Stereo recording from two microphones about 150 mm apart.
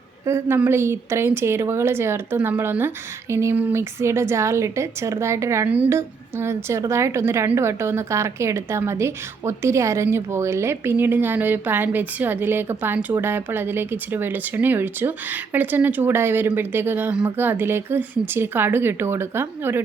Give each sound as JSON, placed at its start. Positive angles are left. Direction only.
{"t": 0.3, "sound": "speech", "side_deg": -15}